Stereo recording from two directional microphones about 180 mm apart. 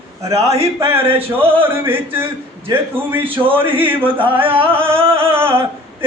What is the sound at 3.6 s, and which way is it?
A man's voice, 10° right (ahead or behind).